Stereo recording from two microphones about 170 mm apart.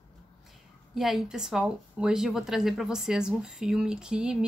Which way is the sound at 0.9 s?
Centre (ahead or behind).